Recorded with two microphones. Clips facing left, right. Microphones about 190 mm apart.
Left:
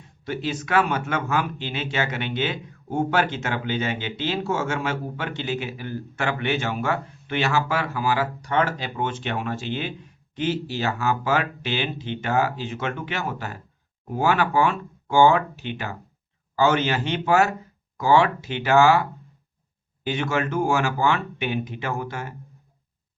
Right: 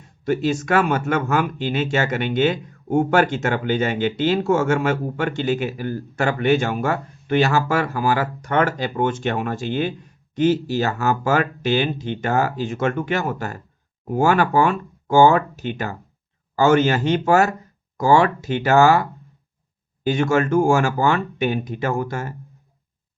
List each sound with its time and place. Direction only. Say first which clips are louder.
0.3 s speech: right 7 dB; 45° right (ahead or behind)
20.1 s speech: right 6 dB; 45° right (ahead or behind)